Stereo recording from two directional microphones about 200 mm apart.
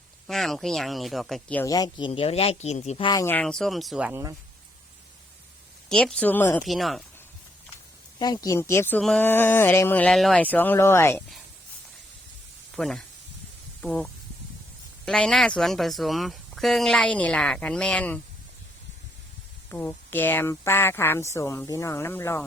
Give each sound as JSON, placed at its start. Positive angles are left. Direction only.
{"t": 0.3, "sound": "speech", "side_deg": 0}
{"t": 3.1, "sound": "speech", "side_deg": 15}
{"t": 5.9, "sound": "speech", "side_deg": 5}
{"t": 6.6, "sound": "speech", "side_deg": 0}
{"t": 8.4, "sound": "speech", "side_deg": 15}
{"t": 12.7, "sound": "speech", "side_deg": 0}
{"t": 19.7, "sound": "speech", "side_deg": 10}